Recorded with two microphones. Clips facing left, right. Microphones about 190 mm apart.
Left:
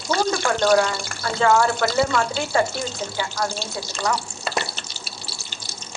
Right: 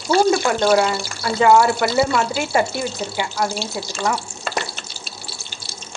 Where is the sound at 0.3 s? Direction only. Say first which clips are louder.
Right 3 dB; 15° right (ahead or behind).